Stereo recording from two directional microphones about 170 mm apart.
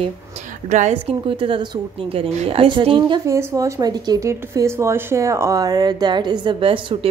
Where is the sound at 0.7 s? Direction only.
45° right (ahead or behind).